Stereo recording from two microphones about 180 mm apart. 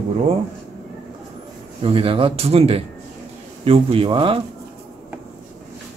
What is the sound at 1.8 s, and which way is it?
Speech, 30° right (ahead or behind).